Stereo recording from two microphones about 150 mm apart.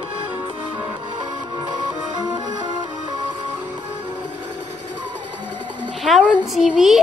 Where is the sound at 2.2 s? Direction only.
30° right (ahead or behind).